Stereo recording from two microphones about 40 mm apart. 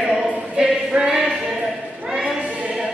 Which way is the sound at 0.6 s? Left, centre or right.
Right.